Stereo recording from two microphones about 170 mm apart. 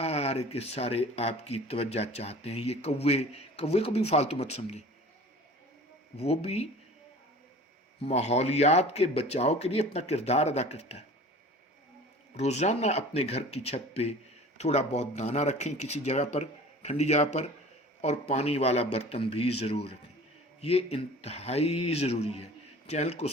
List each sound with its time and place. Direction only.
0.0 s speech: 40° left (ahead or behind)
6.1 s speech: 35° left (ahead or behind)
8.0 s speech: 40° left (ahead or behind)
12.4 s speech: 40° left (ahead or behind)